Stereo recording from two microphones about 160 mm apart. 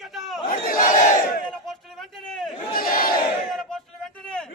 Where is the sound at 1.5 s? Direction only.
Centre (ahead or behind).